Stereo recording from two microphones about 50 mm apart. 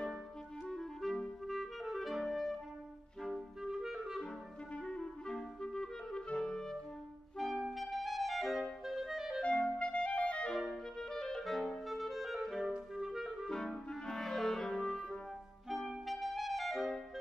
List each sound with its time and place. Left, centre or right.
0.7 s clarinet: centre
3.2 s music: centre
3.6 s clarinet: centre
4.7 s clarinet: left
5.6 s clarinet: centre
6.3 s music: centre
7.3 s clarinet: centre
9.4 s clarinet: left
10.5 s clarinet: centre
14.1 s clarinet: centre
15.9 s clarinet: centre